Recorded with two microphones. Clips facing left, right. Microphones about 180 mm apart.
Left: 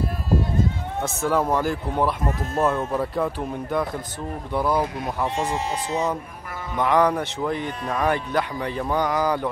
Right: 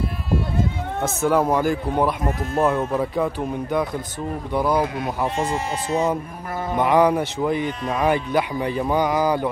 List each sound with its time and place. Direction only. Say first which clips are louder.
1.0 s speech: right 3 dB; centre (ahead or behind)
5.4 s speech: right 1 dB; 15° left (ahead or behind)
6.8 s speech: right 2 dB; 10° right (ahead or behind)